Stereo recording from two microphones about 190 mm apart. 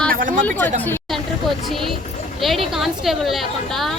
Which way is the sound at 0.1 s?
45° right (ahead or behind).